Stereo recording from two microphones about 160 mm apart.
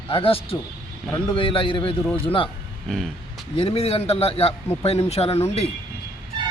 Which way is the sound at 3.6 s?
35° left (ahead or behind).